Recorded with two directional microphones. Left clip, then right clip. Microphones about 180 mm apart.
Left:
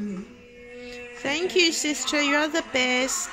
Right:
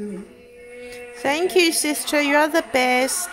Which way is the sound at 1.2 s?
25° right (ahead or behind).